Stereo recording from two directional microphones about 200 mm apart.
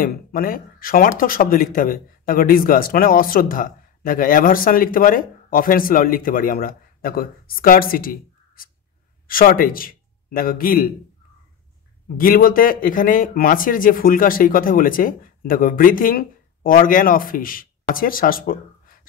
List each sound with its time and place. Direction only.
0.0 s a man's voice: 45° left (ahead or behind)
12.2 s speech: 45° left (ahead or behind)